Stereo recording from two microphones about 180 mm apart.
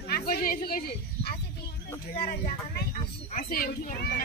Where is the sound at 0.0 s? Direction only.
60° left (ahead or behind).